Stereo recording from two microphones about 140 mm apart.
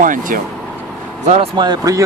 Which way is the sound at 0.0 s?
75° right (ahead or behind).